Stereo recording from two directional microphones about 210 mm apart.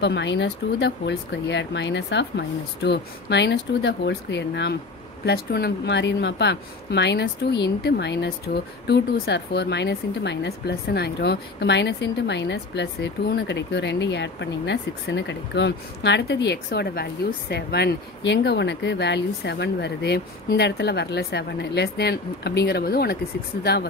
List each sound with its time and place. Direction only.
0.0 s speech: 55° left (ahead or behind)